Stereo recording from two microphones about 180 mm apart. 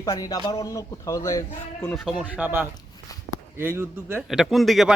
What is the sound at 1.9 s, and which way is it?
Speech, 5° right (ahead or behind).